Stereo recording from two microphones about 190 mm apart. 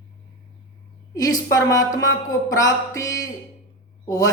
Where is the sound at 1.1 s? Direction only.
20° left (ahead or behind).